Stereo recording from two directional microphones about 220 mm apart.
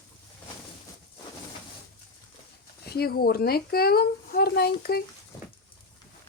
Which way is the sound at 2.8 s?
45° left (ahead or behind).